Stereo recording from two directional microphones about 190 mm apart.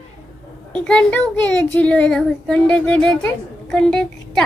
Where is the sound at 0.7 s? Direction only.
5° left (ahead or behind).